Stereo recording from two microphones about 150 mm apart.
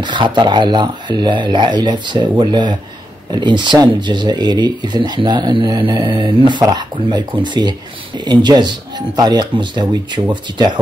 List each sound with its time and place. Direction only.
0.0 s speech: 30° right (ahead or behind)